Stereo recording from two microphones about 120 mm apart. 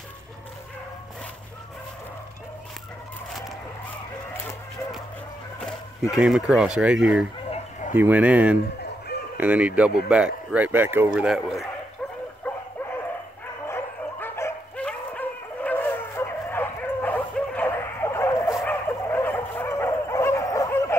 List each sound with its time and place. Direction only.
6.1 s speech: 5° right (ahead or behind)
7.4 s a sound: 60° left (ahead or behind)
7.9 s speech: 15° right (ahead or behind)
11.1 s speech: 5° right (ahead or behind)
12.4 s bow-wow: 15° left (ahead or behind)
13.7 s dog: 20° left (ahead or behind)
14.8 s dog: 10° left (ahead or behind)